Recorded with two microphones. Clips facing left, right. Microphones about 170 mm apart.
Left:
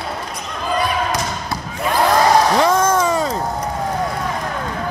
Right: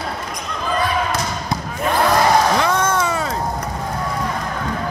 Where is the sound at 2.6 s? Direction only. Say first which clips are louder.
Left 3 dB; 35° left (ahead or behind).